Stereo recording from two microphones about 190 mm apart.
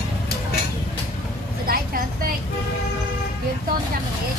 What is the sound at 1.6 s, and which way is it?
Vehicle, 50° right (ahead or behind).